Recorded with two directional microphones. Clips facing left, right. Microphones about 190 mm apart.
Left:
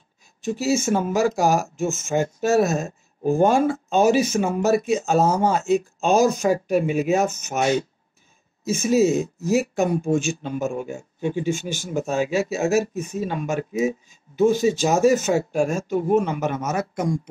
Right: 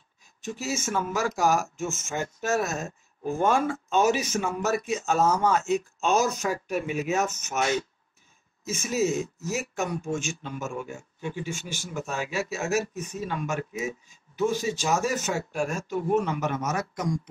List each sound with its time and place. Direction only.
0.5 s speech: 30° left (ahead or behind)